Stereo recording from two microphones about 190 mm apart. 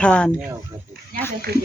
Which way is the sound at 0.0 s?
5° left (ahead or behind).